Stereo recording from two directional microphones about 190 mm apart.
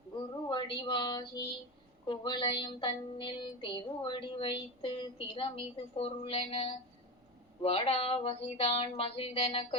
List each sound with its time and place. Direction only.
0.4 s a woman's voice: 25° left (ahead or behind)
2.0 s music: 25° left (ahead or behind)
7.6 s a sound: 30° left (ahead or behind)